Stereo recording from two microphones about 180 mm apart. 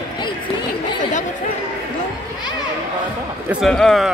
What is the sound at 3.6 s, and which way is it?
Speech, centre (ahead or behind).